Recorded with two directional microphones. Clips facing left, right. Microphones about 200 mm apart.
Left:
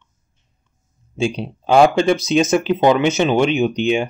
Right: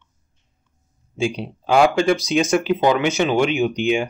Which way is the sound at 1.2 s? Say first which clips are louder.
Left 2 dB; 25° left (ahead or behind).